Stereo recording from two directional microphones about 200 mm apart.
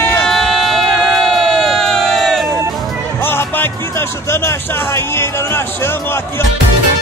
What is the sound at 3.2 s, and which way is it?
Speech, 10° left (ahead or behind).